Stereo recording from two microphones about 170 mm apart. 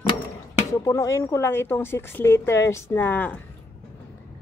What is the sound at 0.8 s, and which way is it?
Speech, 15° left (ahead or behind).